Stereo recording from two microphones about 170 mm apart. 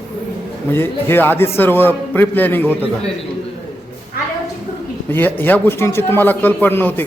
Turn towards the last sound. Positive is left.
turn(degrees=10)  # may be behind; listen again after turning